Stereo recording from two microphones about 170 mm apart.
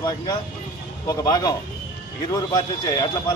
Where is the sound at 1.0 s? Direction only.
20° left (ahead or behind).